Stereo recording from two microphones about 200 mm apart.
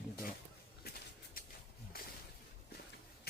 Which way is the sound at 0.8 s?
50° left (ahead or behind).